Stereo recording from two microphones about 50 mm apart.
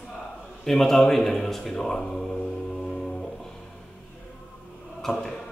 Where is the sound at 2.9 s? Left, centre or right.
Centre.